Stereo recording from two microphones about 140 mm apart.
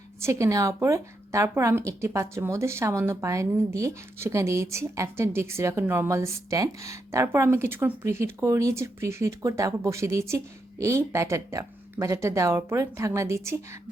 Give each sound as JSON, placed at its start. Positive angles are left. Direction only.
{"t": 0.2, "sound": "speech", "side_deg": -20}